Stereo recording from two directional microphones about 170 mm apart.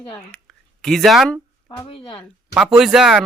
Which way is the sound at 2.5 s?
5° right (ahead or behind).